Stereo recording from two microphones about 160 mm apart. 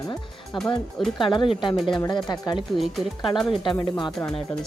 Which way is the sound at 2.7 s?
Centre (ahead or behind).